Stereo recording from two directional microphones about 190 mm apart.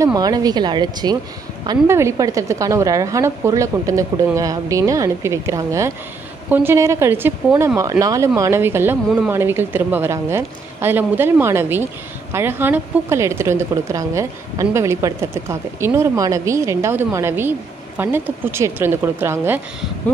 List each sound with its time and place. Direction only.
0.0 s a woman's voice: 20° right (ahead or behind)